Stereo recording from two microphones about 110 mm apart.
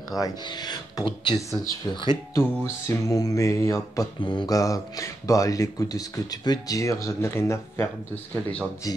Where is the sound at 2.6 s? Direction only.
30° left (ahead or behind).